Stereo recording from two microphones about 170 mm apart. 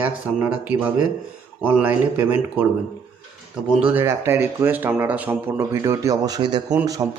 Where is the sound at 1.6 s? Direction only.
10° right (ahead or behind).